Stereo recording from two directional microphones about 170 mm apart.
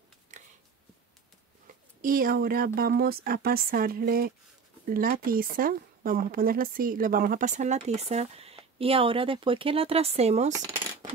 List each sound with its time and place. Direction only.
0.3 s a sound: 45° right (ahead or behind)
2.0 s speech: 55° right (ahead or behind); by 10.5 s 40° right (ahead or behind)
10.5 s coin: 20° right (ahead or behind)